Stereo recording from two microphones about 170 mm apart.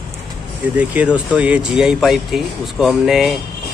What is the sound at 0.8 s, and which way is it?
Speech, 5° right (ahead or behind).